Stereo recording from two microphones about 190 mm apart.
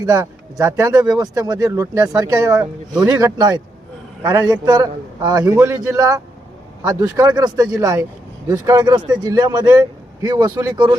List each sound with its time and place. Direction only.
0.0 s speech: 15° right (ahead or behind)